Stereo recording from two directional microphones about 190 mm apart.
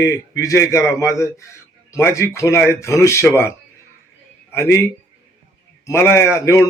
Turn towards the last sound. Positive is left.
turn(degrees=15)  # may be behind; listen again after turning